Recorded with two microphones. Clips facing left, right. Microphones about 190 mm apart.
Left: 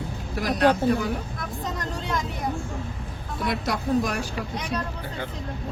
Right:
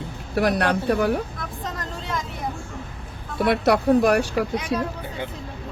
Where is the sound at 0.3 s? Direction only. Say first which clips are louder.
Even; 65° right (ahead or behind).